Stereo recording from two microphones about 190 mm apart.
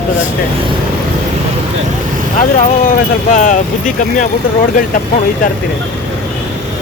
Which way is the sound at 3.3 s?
40° left (ahead or behind).